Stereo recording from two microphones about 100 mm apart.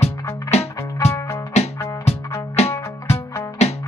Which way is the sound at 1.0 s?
30° left (ahead or behind).